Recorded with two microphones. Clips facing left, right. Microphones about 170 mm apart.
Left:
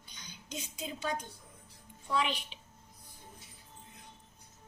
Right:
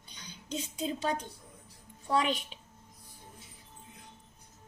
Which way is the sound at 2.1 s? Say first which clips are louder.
Right 4 dB; 45° right (ahead or behind).